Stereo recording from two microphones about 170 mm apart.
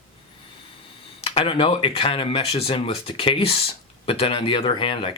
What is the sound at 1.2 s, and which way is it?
Speech, 35° left (ahead or behind).